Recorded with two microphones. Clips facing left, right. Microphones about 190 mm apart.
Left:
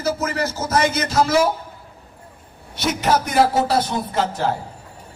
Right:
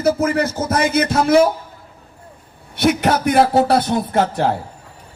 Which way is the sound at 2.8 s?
60° right (ahead or behind).